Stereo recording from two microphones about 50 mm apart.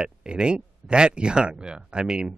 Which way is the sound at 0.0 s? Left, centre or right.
Centre.